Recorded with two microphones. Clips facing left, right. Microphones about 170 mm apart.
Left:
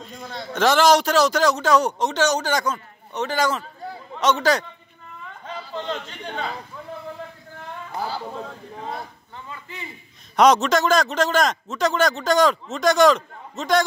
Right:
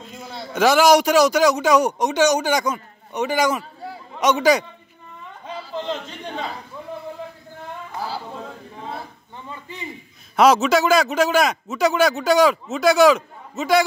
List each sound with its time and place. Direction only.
0.0 s a man's voice: 5° right (ahead or behind)
9.5 s a man's voice: 15° right (ahead or behind)
10.3 s a man's voice: 5° right (ahead or behind)